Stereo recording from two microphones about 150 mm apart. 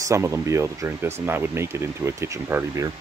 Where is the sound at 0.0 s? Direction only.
20° right (ahead or behind).